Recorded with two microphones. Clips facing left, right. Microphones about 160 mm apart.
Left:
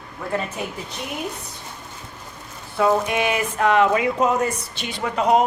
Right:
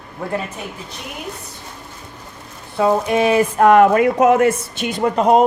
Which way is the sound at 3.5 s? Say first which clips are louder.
Right 6 dB; 50° right (ahead or behind).